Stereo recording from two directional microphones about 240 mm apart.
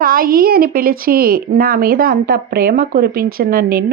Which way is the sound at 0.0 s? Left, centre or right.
Right.